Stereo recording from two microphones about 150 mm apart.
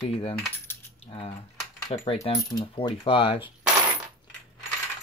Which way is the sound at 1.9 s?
40° left (ahead or behind).